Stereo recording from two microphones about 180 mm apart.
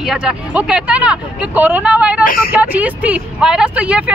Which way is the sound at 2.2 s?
50° left (ahead or behind).